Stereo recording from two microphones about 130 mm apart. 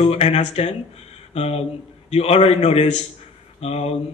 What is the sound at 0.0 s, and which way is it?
A man's voice, 50° left (ahead or behind).